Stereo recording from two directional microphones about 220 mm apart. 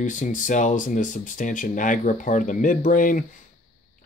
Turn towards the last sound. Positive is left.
turn(degrees=35)  # may be behind; listen again after turning